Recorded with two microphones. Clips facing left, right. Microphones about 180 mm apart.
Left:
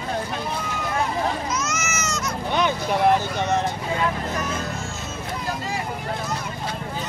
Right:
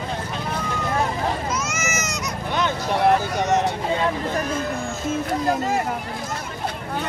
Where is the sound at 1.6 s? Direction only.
15° right (ahead or behind).